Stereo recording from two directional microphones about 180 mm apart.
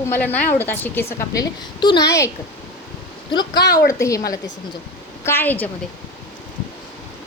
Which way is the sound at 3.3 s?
20° left (ahead or behind).